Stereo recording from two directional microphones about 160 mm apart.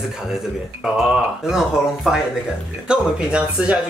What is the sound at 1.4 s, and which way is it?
A woman's voice, 5° right (ahead or behind).